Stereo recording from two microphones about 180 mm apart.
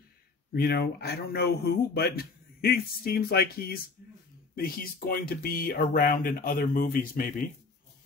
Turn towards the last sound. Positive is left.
turn(degrees=55)  # may be behind; listen again after turning